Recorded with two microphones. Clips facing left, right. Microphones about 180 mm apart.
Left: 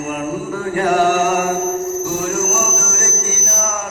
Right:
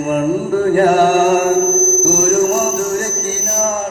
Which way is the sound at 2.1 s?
40° right (ahead or behind).